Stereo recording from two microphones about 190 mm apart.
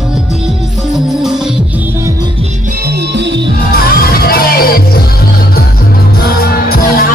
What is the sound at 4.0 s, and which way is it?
Music, 50° left (ahead or behind).